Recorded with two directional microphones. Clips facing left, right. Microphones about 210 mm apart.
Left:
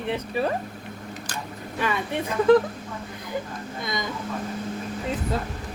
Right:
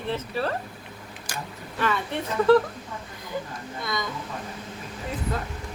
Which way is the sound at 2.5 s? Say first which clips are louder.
Left 1 dB; 15° left (ahead or behind).